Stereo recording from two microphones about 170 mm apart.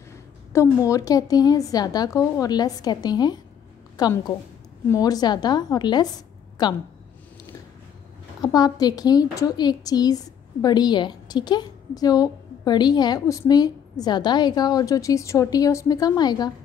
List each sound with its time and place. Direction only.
0.5 s a woman's voice: 15° left (ahead or behind)
8.4 s a woman's voice: 20° left (ahead or behind)